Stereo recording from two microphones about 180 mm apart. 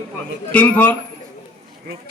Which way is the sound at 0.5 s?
10° left (ahead or behind).